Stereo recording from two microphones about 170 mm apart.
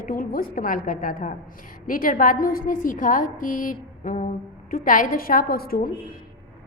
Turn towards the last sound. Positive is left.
turn(degrees=60)  # may be behind; listen again after turning